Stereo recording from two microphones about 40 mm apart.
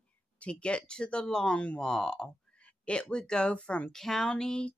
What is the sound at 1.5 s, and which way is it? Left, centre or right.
Speech, left.